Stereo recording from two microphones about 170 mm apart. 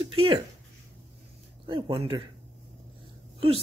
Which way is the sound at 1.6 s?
30° right (ahead or behind).